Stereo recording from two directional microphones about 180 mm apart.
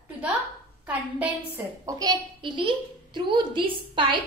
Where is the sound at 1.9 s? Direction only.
20° right (ahead or behind).